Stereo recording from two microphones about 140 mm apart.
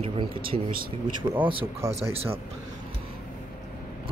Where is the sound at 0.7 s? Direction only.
90° right.